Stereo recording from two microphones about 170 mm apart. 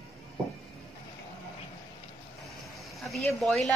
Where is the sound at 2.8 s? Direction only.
Centre (ahead or behind).